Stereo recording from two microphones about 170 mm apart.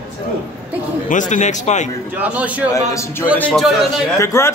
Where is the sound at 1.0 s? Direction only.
45° left (ahead or behind).